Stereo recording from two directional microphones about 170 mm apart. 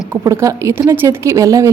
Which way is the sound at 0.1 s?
15° right (ahead or behind).